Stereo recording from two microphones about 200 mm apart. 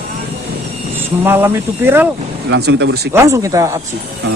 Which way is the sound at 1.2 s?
10° right (ahead or behind).